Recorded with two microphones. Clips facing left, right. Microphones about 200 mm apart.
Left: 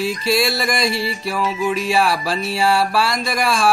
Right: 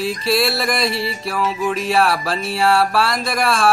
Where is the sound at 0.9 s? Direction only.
30° right (ahead or behind).